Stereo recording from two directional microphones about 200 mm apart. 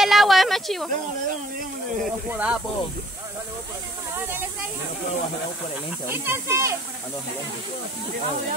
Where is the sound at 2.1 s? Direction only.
5° right (ahead or behind).